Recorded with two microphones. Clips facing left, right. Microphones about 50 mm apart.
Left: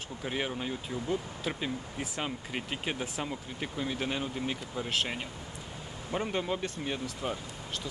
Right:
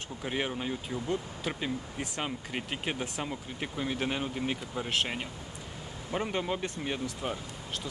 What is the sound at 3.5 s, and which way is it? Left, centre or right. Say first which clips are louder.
Speech: right 1 dB; centre.